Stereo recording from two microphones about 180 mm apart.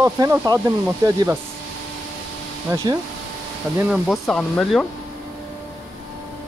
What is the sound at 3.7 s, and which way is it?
Speech, 5° right (ahead or behind).